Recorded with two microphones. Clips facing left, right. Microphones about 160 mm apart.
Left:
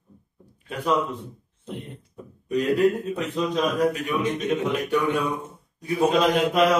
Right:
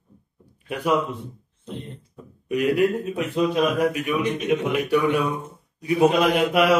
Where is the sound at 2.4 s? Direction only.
10° right (ahead or behind).